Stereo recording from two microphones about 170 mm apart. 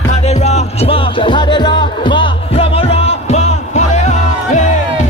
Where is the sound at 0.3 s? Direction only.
40° left (ahead or behind).